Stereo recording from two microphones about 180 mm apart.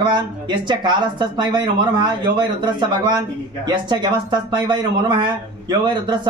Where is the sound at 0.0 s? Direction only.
25° right (ahead or behind).